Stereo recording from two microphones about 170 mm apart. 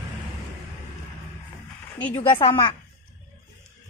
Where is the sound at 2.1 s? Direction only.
30° left (ahead or behind).